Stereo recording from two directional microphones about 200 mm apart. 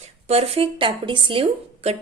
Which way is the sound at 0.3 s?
30° right (ahead or behind).